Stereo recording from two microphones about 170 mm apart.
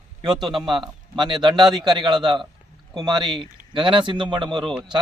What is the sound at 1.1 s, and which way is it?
Speech, 25° right (ahead or behind).